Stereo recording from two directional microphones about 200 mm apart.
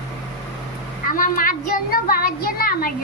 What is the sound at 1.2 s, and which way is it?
Speech, 45° left (ahead or behind).